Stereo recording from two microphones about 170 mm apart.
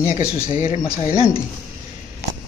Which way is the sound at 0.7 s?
45° left (ahead or behind).